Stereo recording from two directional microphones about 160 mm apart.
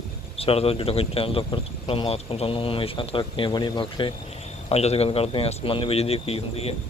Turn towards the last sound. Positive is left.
turn(degrees=40)  # may be behind; listen again after turning